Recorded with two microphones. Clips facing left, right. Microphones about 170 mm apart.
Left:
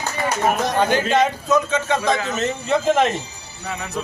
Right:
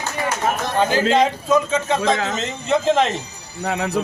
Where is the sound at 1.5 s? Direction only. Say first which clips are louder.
Right 1 dB; 30° right (ahead or behind).